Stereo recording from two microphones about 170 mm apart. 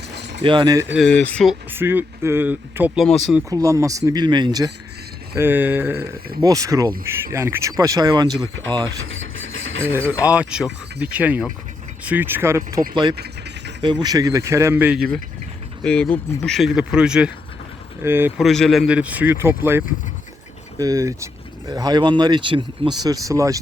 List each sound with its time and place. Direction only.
0.4 s speech: 25° right (ahead or behind)
0.9 s speech: 5° left (ahead or behind)
1.7 s speech: 10° right (ahead or behind)
5.4 s speech: 10° right (ahead or behind)
9.9 s speech: 10° right (ahead or behind)
12.9 s speech: 25° right (ahead or behind); by 15.0 s 10° right (ahead or behind)
15.8 s speech: 5° left (ahead or behind); by 18.3 s 15° right (ahead or behind)
18.3 s speech: centre (ahead or behind)
20.7 s speech: 20° right (ahead or behind)